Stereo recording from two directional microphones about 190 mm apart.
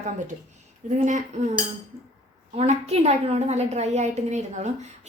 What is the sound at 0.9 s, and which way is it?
Speech, 40° right (ahead or behind).